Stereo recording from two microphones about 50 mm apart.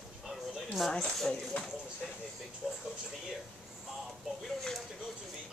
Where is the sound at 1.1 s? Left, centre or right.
Centre.